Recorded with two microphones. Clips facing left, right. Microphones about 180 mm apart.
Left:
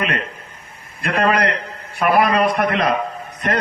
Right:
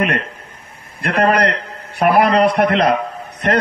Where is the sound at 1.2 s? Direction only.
55° right (ahead or behind).